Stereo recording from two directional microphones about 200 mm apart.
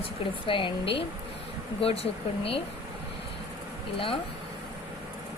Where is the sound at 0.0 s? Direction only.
25° left (ahead or behind).